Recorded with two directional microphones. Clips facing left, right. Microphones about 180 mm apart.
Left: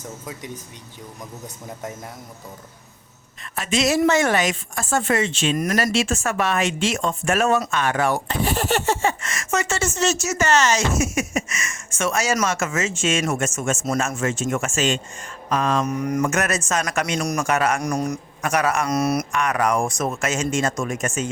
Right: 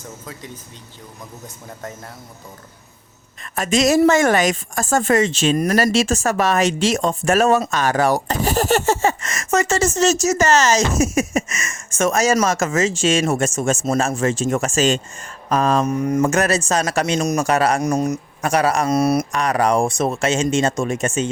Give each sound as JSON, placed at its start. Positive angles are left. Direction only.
{"t": 0.3, "sound": "speech", "side_deg": 15}
{"t": 3.4, "sound": "speech", "side_deg": -45}
{"t": 15.8, "sound": "speech", "side_deg": -30}